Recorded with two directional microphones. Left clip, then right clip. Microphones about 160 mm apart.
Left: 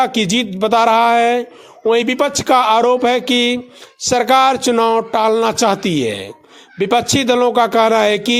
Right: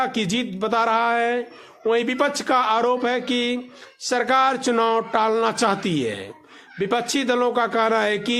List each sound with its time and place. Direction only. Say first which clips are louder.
0.0 s speech: left 8 dB; 30° left (ahead or behind)